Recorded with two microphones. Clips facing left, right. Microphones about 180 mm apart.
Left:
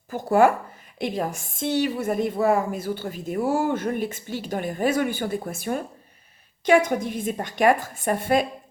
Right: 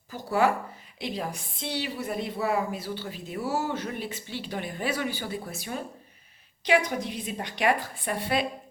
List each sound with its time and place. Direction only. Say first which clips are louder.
0.1 s a woman's voice: left 6 dB; 50° left (ahead or behind)